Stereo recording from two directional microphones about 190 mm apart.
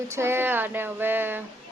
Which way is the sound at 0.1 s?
15° right (ahead or behind).